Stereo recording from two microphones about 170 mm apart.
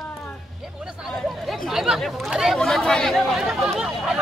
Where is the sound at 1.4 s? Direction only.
Centre (ahead or behind).